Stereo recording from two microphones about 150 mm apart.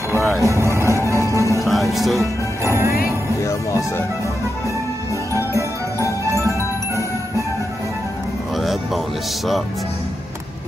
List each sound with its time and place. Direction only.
0.4 s vehicle: 20° right (ahead or behind)
1.6 s music: centre (ahead or behind)
2.6 s music: 20° right (ahead or behind)
3.1 s music: 20° left (ahead or behind)